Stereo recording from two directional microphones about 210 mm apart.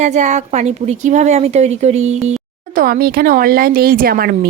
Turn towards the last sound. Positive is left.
turn(degrees=-45)  # may be behind; listen again after turning